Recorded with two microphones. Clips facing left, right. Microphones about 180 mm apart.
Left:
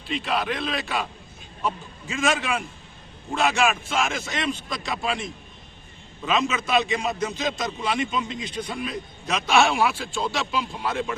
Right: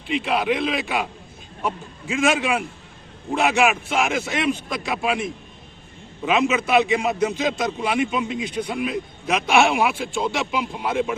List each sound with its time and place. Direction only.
0.1 s a man's voice: 15° right (ahead or behind)
6.5 s a man's voice: 15° right (ahead or behind)